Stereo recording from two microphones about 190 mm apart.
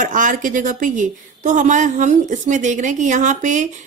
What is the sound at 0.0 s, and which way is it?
A woman's voice, 45° right (ahead or behind).